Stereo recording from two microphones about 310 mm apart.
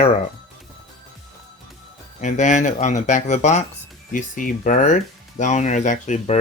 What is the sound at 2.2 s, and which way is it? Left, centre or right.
Speech, left.